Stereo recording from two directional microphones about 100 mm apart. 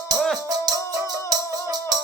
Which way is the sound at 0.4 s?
40° right (ahead or behind).